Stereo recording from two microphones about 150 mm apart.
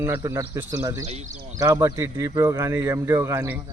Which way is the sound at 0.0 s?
20° right (ahead or behind).